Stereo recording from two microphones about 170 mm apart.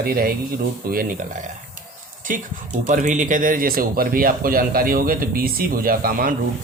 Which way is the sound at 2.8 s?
50° right (ahead or behind).